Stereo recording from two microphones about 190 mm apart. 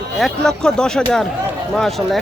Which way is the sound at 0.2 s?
Centre (ahead or behind).